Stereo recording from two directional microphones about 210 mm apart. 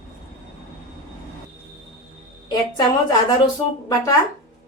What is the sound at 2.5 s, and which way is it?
Speech, 20° left (ahead or behind).